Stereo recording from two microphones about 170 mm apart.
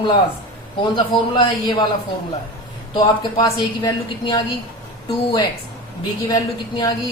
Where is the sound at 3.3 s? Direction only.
25° left (ahead or behind).